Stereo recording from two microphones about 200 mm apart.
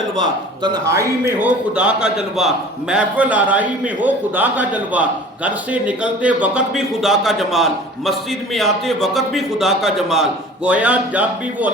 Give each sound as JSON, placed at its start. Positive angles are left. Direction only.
{"t": 0.2, "sound": "a man's voice", "side_deg": -20}
{"t": 1.4, "sound": "a man's voice", "side_deg": -5}